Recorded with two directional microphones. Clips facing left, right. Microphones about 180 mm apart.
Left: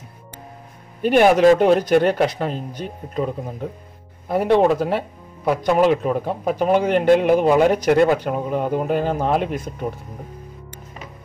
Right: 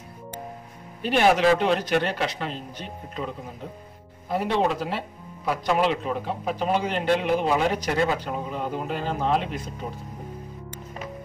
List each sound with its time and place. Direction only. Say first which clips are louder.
1.0 s speech: left 7 dB; 50° left (ahead or behind)